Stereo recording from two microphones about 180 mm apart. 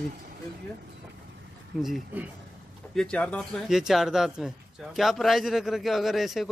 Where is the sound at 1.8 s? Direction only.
Centre (ahead or behind).